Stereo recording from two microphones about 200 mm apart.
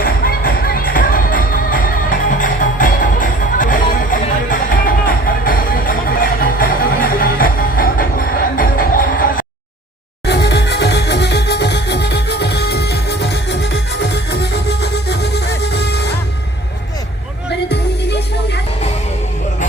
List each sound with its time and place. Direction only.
0.0 s music: 45° left (ahead or behind)
10.2 s music: 55° left (ahead or behind)
17.5 s music: 55° left (ahead or behind)